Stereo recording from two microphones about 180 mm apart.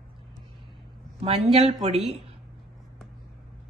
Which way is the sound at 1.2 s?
35° right (ahead or behind).